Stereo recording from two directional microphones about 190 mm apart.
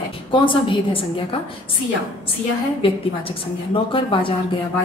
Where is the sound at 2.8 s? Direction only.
30° left (ahead or behind).